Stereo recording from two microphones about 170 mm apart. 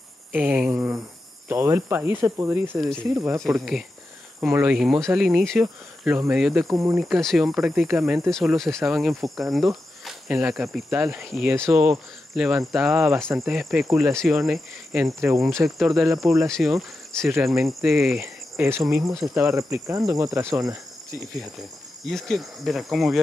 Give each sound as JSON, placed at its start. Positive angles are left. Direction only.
{"t": 0.3, "sound": "speech", "side_deg": -10}
{"t": 6.6, "sound": "speech", "side_deg": -20}
{"t": 7.0, "sound": "speech", "side_deg": 0}
{"t": 11.5, "sound": "speech", "side_deg": -15}
{"t": 15.1, "sound": "speech", "side_deg": -15}
{"t": 15.4, "sound": "speech", "side_deg": 0}
{"t": 18.2, "sound": "cricket", "side_deg": -15}
{"t": 19.3, "sound": "speech", "side_deg": -15}
{"t": 21.4, "sound": "speech", "side_deg": 0}